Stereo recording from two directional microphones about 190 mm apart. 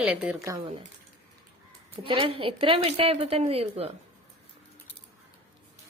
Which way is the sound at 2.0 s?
25° right (ahead or behind).